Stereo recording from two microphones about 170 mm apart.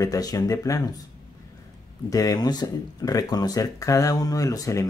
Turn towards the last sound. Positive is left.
turn(degrees=20)  # may be behind; listen again after turning